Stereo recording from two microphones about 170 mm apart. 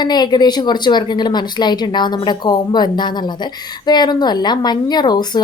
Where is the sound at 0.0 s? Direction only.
25° left (ahead or behind).